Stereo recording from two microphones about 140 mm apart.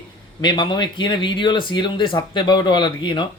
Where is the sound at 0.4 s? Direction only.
35° left (ahead or behind).